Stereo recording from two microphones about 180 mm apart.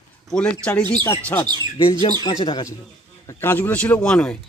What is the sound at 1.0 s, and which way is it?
Speech, 15° left (ahead or behind).